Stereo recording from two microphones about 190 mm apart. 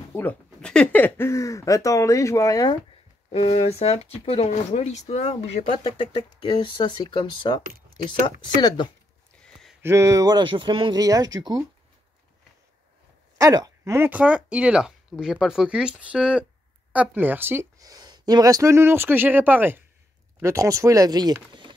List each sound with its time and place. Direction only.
0.1 s speech: 10° left (ahead or behind)
3.3 s speech: 35° left (ahead or behind)
9.4 s a sound: centre (ahead or behind)
9.8 s speech: 15° right (ahead or behind)
13.4 s speech: 20° right (ahead or behind)